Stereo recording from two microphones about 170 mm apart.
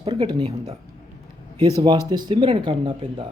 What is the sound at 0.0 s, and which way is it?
Speech, 30° right (ahead or behind).